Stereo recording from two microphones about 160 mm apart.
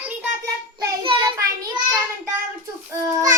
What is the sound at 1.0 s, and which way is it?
Child singing, 30° right (ahead or behind).